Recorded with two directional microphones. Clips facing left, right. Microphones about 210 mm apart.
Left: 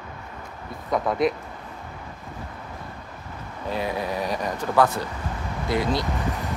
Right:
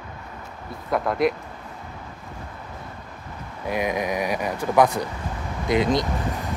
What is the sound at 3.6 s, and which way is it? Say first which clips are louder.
Speech: right 3 dB; 15° right (ahead or behind).